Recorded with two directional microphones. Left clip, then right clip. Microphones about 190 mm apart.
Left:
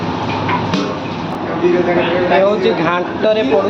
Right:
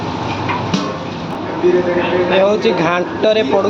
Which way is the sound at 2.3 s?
25° right (ahead or behind).